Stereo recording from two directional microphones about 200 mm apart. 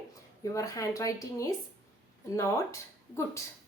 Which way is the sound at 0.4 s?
15° left (ahead or behind).